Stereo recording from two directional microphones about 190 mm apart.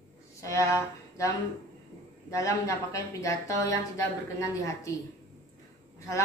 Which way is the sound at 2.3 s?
15° left (ahead or behind).